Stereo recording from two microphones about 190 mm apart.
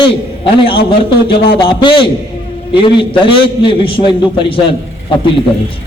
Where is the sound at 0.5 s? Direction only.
30° left (ahead or behind).